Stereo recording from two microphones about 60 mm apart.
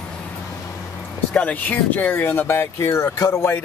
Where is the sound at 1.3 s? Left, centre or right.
Left.